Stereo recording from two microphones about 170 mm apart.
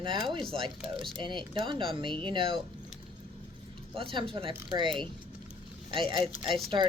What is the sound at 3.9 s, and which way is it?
Speech, 30° right (ahead or behind).